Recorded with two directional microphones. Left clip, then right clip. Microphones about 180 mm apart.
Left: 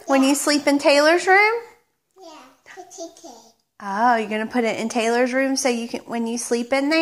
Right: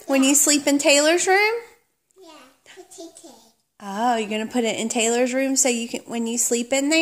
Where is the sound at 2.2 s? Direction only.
15° right (ahead or behind).